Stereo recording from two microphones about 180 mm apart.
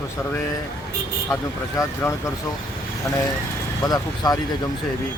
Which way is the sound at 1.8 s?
20° left (ahead or behind).